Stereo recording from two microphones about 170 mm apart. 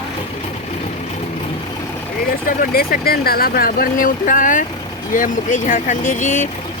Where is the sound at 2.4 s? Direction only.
60° left (ahead or behind).